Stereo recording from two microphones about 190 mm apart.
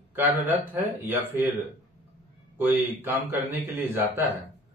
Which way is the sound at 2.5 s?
10° right (ahead or behind).